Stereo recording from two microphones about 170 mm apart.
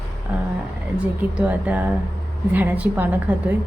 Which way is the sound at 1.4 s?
10° right (ahead or behind).